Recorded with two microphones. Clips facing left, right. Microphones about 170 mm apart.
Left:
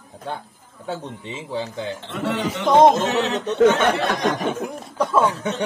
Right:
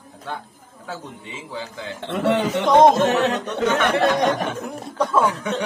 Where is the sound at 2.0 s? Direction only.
60° right (ahead or behind).